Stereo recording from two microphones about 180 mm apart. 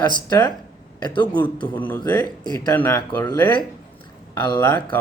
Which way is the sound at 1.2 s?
10° left (ahead or behind).